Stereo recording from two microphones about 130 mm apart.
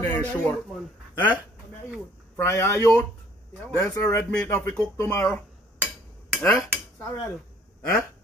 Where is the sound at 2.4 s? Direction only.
20° left (ahead or behind).